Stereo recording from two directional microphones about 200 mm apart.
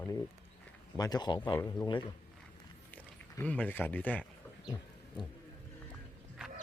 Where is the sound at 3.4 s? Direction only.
5° left (ahead or behind).